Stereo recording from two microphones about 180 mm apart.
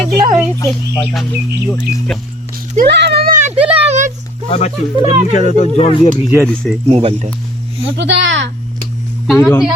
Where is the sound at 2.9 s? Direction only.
70° right (ahead or behind); by 3.5 s 45° right (ahead or behind).